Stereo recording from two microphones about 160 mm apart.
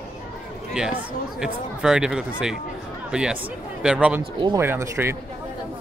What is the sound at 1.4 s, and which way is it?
Speech, 5° right (ahead or behind).